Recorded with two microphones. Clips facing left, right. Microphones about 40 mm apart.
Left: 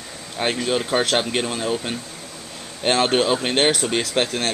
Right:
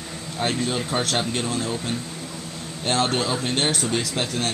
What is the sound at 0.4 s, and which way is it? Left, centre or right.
Speech, left.